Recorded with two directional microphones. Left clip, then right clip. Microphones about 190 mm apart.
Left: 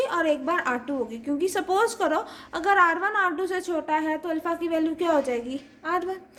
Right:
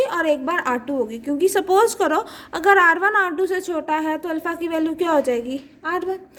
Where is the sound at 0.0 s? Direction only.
35° right (ahead or behind).